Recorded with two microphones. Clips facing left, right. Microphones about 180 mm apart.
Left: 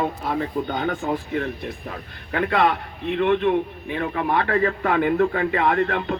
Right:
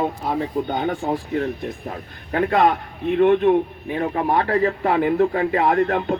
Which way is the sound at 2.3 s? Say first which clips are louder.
Right 3 dB; 40° right (ahead or behind).